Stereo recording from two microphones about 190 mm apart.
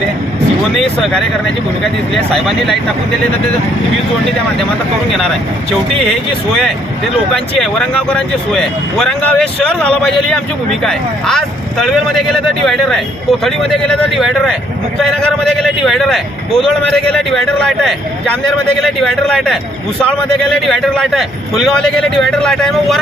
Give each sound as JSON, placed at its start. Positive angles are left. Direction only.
{"t": 0.8, "sound": "speech", "side_deg": 0}
{"t": 7.3, "sound": "speech", "side_deg": 5}